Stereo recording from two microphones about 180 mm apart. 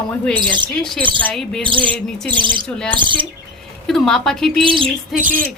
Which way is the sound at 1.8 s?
10° left (ahead or behind).